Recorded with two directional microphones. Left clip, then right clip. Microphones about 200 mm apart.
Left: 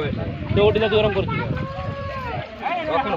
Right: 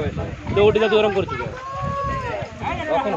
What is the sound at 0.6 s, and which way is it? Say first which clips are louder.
Speech: right 2 dB; 55° right (ahead or behind).